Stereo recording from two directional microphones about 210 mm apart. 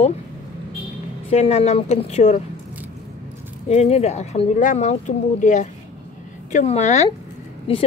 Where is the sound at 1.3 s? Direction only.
30° left (ahead or behind).